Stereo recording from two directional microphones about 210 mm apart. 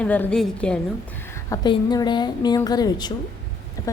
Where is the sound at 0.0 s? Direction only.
5° left (ahead or behind).